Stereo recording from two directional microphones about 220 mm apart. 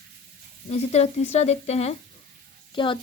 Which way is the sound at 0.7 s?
30° left (ahead or behind).